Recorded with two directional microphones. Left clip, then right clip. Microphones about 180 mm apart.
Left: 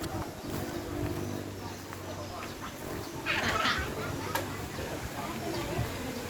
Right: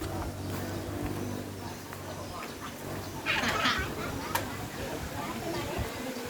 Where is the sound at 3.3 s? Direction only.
70° right (ahead or behind).